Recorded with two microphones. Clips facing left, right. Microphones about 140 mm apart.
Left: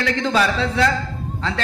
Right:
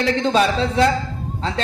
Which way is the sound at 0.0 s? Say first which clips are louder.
Right 2 dB; 25° right (ahead or behind).